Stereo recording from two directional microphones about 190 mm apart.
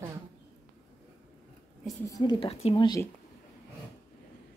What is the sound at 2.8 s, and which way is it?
Speech, 20° left (ahead or behind).